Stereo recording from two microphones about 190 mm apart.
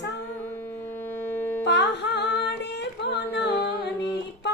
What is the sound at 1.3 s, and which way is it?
Carnatic music, 10° left (ahead or behind).